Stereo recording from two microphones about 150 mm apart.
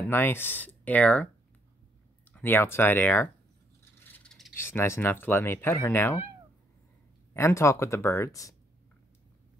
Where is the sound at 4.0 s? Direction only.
10° left (ahead or behind).